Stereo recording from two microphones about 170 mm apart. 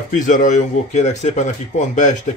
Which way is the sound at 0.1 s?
50° left (ahead or behind).